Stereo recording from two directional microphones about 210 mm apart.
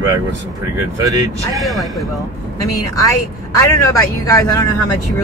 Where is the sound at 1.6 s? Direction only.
Centre (ahead or behind).